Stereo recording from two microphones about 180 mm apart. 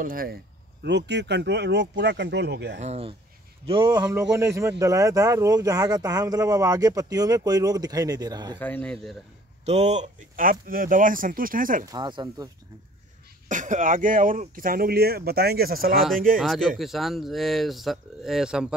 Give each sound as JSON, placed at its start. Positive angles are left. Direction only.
{"t": 0.0, "sound": "speech", "side_deg": -50}
{"t": 0.8, "sound": "speech", "side_deg": -70}
{"t": 2.8, "sound": "speech", "side_deg": -35}
{"t": 8.5, "sound": "speech", "side_deg": 10}
{"t": 9.7, "sound": "speech", "side_deg": -40}
{"t": 11.8, "sound": "speech", "side_deg": -25}
{"t": 13.5, "sound": "speech", "side_deg": -45}
{"t": 16.3, "sound": "speech", "side_deg": 0}